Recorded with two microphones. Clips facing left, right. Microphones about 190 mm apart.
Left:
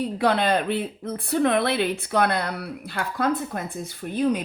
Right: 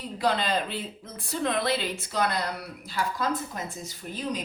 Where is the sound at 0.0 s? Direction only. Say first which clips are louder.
Left 5 dB; 60° left (ahead or behind).